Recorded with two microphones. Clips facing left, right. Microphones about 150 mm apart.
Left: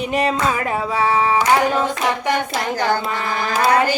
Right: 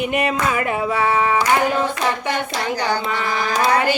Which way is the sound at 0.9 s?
30° left (ahead or behind).